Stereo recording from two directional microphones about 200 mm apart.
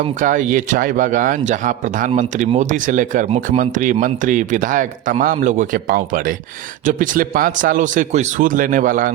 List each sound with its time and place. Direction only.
0.2 s speech: 40° right (ahead or behind)